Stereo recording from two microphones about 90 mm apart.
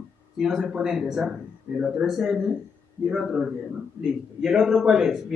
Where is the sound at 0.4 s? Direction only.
5° right (ahead or behind).